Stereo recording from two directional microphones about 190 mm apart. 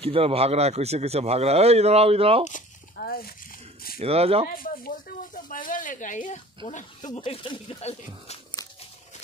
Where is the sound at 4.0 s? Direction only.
30° right (ahead or behind).